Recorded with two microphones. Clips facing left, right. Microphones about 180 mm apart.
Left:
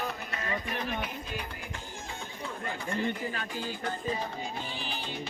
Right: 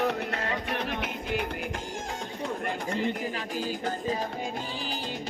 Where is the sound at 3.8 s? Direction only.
40° right (ahead or behind).